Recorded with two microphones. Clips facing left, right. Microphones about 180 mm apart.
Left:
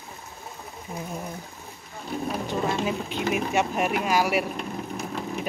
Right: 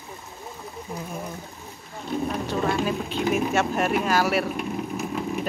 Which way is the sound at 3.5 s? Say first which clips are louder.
Right 2 dB; 15° left (ahead or behind).